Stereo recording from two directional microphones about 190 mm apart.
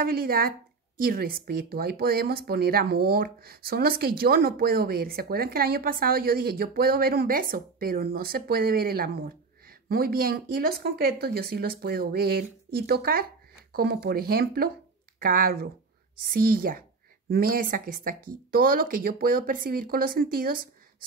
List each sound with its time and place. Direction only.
0.0 s a woman's voice: 50° right (ahead or behind)